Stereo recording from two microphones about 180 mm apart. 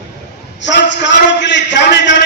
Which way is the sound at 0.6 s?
80° left.